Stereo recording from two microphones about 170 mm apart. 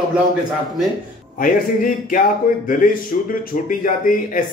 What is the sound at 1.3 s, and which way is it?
Speech, 50° left (ahead or behind).